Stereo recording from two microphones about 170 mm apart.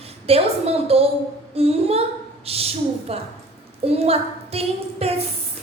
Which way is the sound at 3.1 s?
35° right (ahead or behind).